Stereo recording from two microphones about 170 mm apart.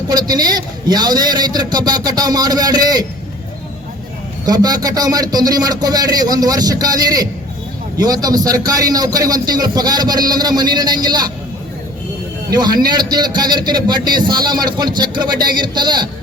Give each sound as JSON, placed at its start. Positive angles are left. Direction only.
{"t": 0.1, "sound": "a man's voice", "side_deg": -25}
{"t": 4.4, "sound": "a man's voice", "side_deg": -25}
{"t": 12.5, "sound": "a man's voice", "side_deg": -25}